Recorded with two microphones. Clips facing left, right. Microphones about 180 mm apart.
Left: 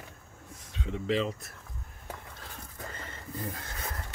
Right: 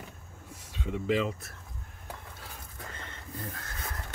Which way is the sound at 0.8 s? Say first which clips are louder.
Right 1 dB; 5° right (ahead or behind).